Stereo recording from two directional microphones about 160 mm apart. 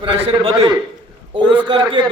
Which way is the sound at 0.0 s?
35° right (ahead or behind).